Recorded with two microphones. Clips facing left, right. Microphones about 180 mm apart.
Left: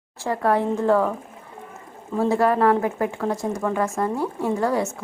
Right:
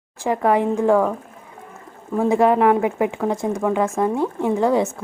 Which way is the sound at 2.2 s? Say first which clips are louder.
Right 3 dB; 20° right (ahead or behind).